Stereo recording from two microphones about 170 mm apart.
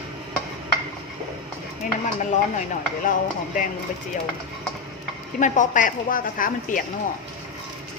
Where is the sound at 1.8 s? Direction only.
50° left (ahead or behind).